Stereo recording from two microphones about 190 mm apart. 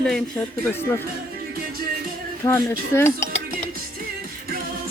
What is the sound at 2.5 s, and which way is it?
Speech, 15° left (ahead or behind).